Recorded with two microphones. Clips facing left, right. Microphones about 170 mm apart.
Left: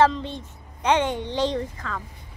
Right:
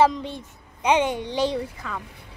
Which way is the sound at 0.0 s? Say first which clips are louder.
Even; 10° right (ahead or behind).